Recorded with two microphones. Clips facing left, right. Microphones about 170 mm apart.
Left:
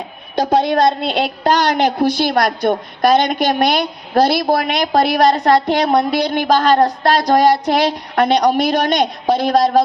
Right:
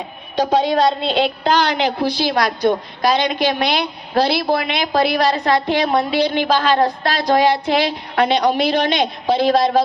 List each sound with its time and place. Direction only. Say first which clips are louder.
0.3 s a woman's voice: left 1 dB; 45° left (ahead or behind)